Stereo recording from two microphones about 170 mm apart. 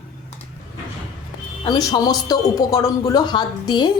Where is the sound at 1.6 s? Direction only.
25° left (ahead or behind).